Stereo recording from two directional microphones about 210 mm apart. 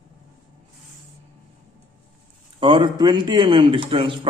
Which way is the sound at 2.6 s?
20° right (ahead or behind).